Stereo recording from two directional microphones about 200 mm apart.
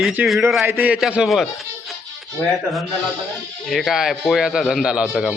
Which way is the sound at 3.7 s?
Centre (ahead or behind).